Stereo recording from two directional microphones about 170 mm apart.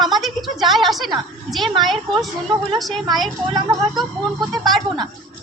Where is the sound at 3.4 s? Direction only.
25° right (ahead or behind).